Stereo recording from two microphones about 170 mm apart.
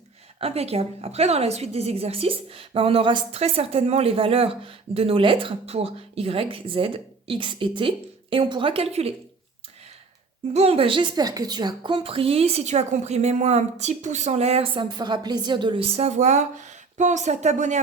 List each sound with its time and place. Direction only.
0.3 s a woman's voice: 35° right (ahead or behind)
10.5 s a woman's voice: 35° right (ahead or behind)